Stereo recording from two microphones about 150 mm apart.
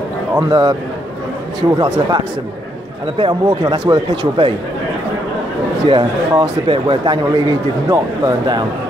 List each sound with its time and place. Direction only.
0.4 s speech: 25° right (ahead or behind)
5.9 s speech: 30° right (ahead or behind)